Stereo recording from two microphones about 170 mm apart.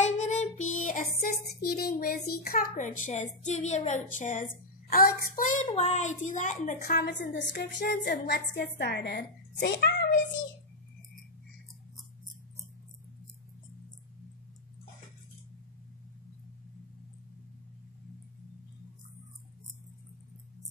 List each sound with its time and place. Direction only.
0.0 s music: 45° left (ahead or behind)
1.6 s a child's voice: 65° left (ahead or behind); by 6.8 s 45° left (ahead or behind)
6.8 s a woman's voice: 60° left (ahead or behind)